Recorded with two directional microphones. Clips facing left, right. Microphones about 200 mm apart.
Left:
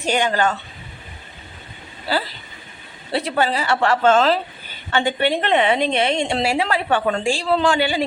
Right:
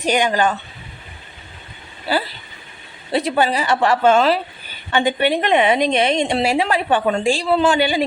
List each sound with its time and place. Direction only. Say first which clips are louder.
0.0 s a woman's voice: right 2 dB; 15° right (ahead or behind)
2.1 s a woman's voice: right 2 dB; 15° right (ahead or behind)